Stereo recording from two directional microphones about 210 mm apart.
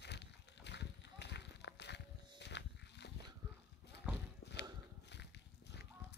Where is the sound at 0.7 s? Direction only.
55° left (ahead or behind).